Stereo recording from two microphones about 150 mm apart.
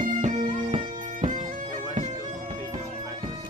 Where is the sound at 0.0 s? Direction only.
60° right (ahead or behind).